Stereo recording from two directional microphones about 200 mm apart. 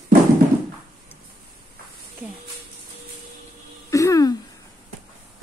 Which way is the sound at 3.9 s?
15° left (ahead or behind).